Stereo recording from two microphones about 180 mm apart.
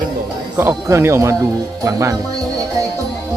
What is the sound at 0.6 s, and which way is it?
Speech, 15° right (ahead or behind).